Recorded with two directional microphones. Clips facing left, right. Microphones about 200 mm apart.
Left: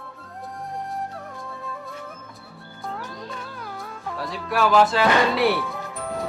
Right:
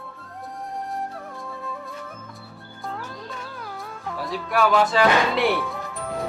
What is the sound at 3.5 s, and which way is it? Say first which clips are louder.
Cat: even; centre (ahead or behind).